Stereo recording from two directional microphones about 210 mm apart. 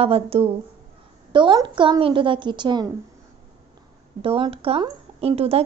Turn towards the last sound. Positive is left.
turn(degrees=-30)  # may be behind; listen again after turning